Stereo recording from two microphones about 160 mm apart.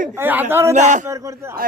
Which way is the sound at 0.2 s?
10° right (ahead or behind).